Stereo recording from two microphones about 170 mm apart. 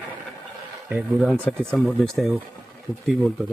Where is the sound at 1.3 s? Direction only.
Centre (ahead or behind).